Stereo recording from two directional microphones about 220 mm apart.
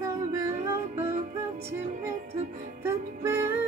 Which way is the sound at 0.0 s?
15° right (ahead or behind).